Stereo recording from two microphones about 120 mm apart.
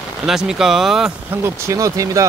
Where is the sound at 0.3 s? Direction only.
5° right (ahead or behind).